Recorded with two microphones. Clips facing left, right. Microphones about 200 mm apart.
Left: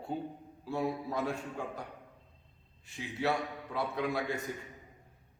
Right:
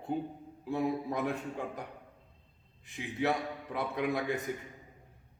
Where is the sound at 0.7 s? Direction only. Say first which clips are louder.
Right 2 dB; 15° right (ahead or behind).